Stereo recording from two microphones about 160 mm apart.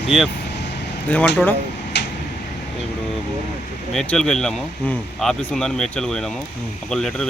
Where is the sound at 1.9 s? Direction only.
90° left.